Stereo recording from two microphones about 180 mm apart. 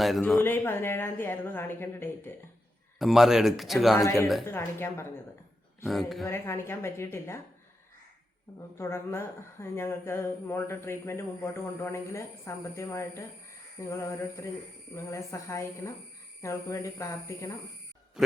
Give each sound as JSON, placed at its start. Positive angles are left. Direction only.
{"t": 0.3, "sound": "speech", "side_deg": 10}
{"t": 3.0, "sound": "speech", "side_deg": 0}
{"t": 4.0, "sound": "speech", "side_deg": 15}
{"t": 5.8, "sound": "speech", "side_deg": 0}
{"t": 6.2, "sound": "speech", "side_deg": 15}
{"t": 8.8, "sound": "speech", "side_deg": 15}